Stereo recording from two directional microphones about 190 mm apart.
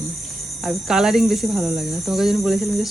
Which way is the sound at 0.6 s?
5° right (ahead or behind).